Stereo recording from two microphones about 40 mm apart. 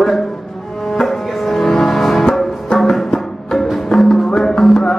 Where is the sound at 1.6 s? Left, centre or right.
Centre.